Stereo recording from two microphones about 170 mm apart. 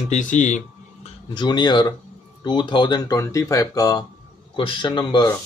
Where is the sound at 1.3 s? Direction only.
25° left (ahead or behind).